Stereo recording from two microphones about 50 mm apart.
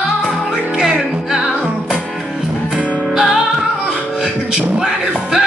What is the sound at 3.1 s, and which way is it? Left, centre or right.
Music, centre.